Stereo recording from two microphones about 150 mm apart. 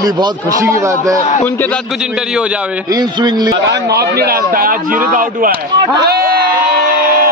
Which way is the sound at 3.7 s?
90° right.